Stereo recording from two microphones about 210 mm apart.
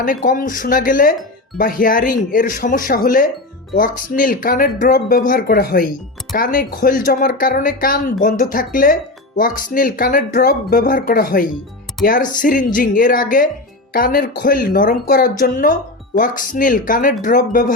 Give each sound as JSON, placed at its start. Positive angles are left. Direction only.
{"t": 0.0, "sound": "speech", "side_deg": 40}